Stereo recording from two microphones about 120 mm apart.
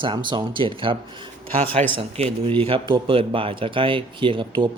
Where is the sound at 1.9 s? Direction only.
55° right (ahead or behind).